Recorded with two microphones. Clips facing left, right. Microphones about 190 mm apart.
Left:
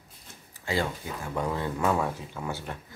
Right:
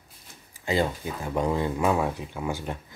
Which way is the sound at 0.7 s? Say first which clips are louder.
Right 4 dB; 20° right (ahead or behind).